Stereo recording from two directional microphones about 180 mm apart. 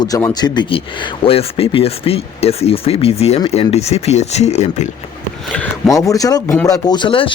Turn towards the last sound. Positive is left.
turn(degrees=30)  # may be behind; listen again after turning